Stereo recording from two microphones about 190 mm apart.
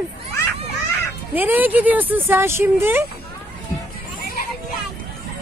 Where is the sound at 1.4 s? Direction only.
10° right (ahead or behind).